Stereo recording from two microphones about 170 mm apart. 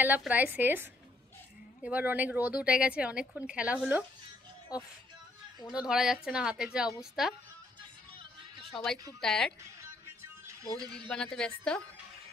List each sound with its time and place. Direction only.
0.2 s speech: 10° right (ahead or behind)
5.7 s a woman's voice: 5° right (ahead or behind)
8.2 s music: 30° right (ahead or behind)
8.7 s a woman's voice: centre (ahead or behind)
10.4 s music: 20° right (ahead or behind)
11.1 s a woman's voice: 5° left (ahead or behind)